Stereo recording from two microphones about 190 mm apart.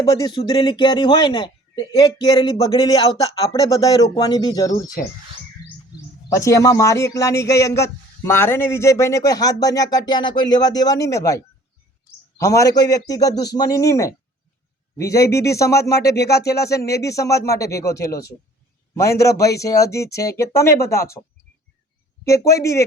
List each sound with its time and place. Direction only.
0.0 s speech: 20° left (ahead or behind)
6.3 s a man's voice: 15° left (ahead or behind)
22.2 s a man's voice: 15° left (ahead or behind)